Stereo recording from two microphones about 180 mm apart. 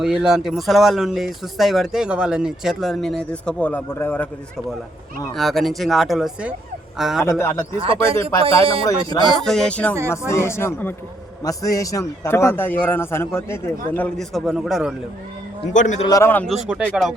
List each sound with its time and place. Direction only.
0.0 s speech: 5° right (ahead or behind)
5.3 s speech: centre (ahead or behind)
7.3 s a man's voice: 15° left (ahead or behind)
8.1 s speech: 30° right (ahead or behind)
9.2 s a man's voice: centre (ahead or behind)
15.7 s a man's voice: 45° left (ahead or behind)
16.0 s a man's voice: 15° left (ahead or behind)
16.5 s speech: 5° right (ahead or behind)